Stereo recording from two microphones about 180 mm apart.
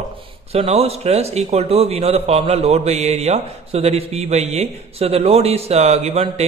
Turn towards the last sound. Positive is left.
turn(degrees=-35)  # may be behind; listen again after turning